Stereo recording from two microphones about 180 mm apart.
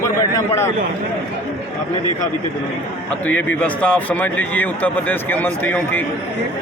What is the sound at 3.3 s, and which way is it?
A man's voice, 10° left (ahead or behind).